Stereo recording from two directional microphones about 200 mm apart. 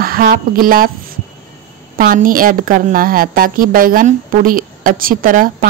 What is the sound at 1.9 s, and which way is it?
A woman's voice, 45° right (ahead or behind).